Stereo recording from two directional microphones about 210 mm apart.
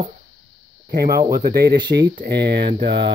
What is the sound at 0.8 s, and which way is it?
Speech, 50° right (ahead or behind).